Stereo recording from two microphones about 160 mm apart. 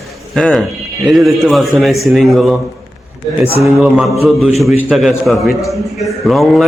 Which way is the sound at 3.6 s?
Centre (ahead or behind).